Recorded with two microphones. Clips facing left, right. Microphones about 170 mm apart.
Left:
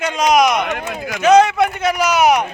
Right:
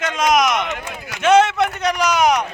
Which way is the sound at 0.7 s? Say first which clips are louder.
Left 5 dB; 60° left (ahead or behind).